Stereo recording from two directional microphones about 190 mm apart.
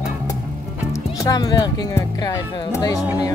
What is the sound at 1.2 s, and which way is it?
Speech, 20° left (ahead or behind).